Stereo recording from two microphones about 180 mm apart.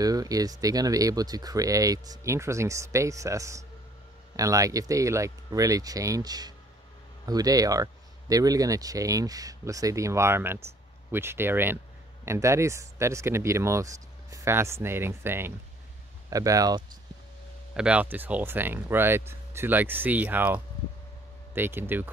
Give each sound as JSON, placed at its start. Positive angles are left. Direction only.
{"t": 0.0, "sound": "speech", "side_deg": -20}
{"t": 17.7, "sound": "speech", "side_deg": -5}